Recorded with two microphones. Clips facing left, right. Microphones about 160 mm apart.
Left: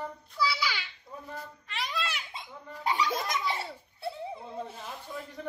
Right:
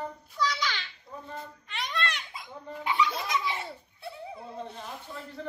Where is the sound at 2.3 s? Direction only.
25° left (ahead or behind).